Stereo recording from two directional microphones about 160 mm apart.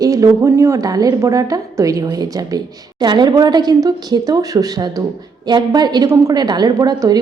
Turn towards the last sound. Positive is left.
turn(degrees=-25)  # may be behind; listen again after turning